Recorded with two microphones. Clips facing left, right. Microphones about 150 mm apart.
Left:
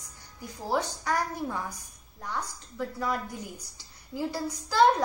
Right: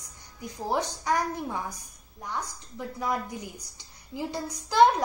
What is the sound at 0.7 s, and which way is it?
A woman's voice, 15° right (ahead or behind).